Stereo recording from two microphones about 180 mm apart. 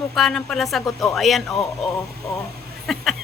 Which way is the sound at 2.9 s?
Centre (ahead or behind).